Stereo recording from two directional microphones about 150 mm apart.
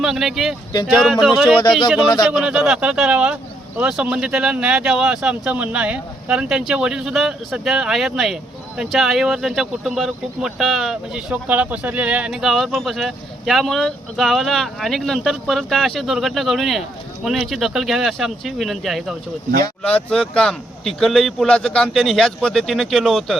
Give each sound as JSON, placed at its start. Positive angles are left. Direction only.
{"t": 0.0, "sound": "speech", "side_deg": -5}
{"t": 2.0, "sound": "speech", "side_deg": 25}
{"t": 2.2, "sound": "speech", "side_deg": -5}